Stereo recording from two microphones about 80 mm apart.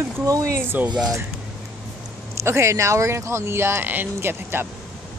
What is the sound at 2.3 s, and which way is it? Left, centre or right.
Speech, right.